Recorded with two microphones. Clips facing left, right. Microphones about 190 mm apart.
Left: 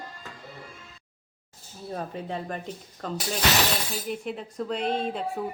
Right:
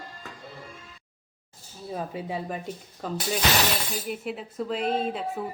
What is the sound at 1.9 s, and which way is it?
Speech, 5° right (ahead or behind).